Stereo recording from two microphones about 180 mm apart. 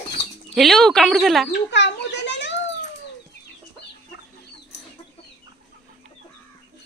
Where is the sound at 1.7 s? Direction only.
80° left.